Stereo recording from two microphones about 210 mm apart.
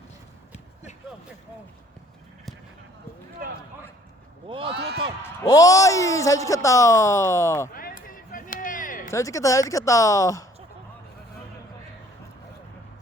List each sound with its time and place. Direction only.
4.4 s a man's voice: 25° right (ahead or behind)
4.7 s speech: 50° right (ahead or behind)
5.2 s a man's voice: 15° left (ahead or behind)
7.7 s a sound: 45° left (ahead or behind)
9.0 s a man's voice: 15° left (ahead or behind)